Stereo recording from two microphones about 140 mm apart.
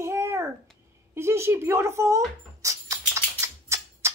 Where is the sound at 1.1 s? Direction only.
20° right (ahead or behind).